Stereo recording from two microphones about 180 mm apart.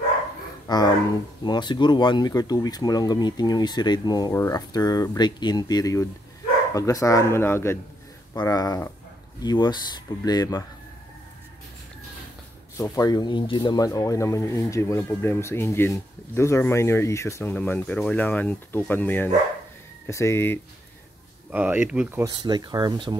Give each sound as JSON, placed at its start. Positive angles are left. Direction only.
{"t": 0.7, "sound": "speech", "side_deg": 20}
{"t": 12.7, "sound": "speech", "side_deg": 20}
{"t": 21.5, "sound": "speech", "side_deg": -10}
{"t": 22.2, "sound": "speech", "side_deg": -25}